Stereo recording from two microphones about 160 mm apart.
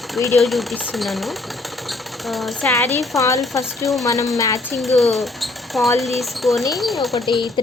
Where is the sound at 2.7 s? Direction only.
20° left (ahead or behind).